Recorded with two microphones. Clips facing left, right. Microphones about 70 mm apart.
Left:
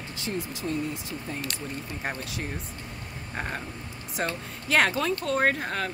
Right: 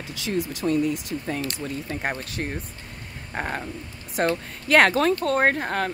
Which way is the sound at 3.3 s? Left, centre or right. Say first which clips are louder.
Right 4 dB; right.